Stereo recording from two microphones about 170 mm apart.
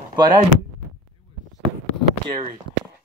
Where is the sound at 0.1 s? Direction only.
25° right (ahead or behind).